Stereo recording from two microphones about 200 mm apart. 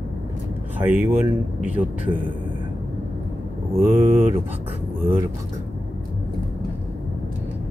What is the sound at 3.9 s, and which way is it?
Speech, 35° right (ahead or behind).